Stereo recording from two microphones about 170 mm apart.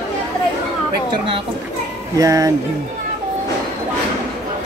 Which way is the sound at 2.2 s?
20° right (ahead or behind).